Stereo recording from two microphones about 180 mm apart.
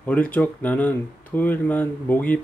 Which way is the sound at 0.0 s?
5° left (ahead or behind).